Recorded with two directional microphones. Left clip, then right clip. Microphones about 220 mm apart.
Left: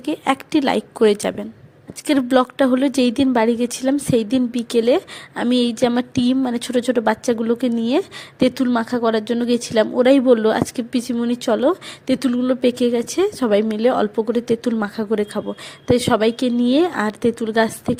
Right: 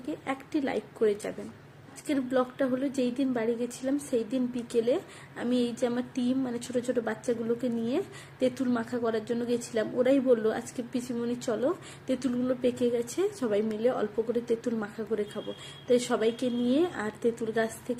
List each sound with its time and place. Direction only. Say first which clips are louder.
0.0 s a woman's voice: left 14 dB; 45° left (ahead or behind)